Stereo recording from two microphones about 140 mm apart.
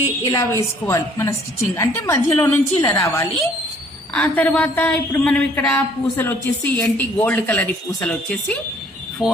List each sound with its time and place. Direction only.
0.3 s a woman's voice: 20° left (ahead or behind)
4.1 s speech: 10° left (ahead or behind)
9.2 s speech: 5° right (ahead or behind)